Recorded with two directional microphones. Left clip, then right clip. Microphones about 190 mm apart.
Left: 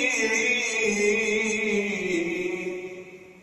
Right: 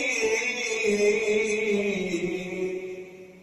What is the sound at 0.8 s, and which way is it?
Music, 25° right (ahead or behind).